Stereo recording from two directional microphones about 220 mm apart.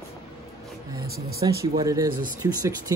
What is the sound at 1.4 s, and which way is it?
Speech, 20° right (ahead or behind).